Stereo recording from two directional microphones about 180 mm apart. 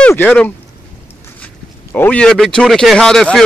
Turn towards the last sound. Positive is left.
turn(degrees=5)  # may be behind; listen again after turning